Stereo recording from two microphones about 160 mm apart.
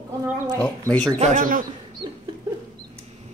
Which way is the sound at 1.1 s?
50° right (ahead or behind).